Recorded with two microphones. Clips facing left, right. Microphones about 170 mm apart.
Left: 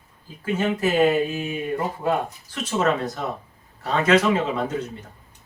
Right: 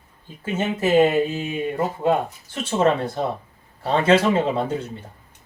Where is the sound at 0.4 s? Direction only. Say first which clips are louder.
Even; 25° right (ahead or behind).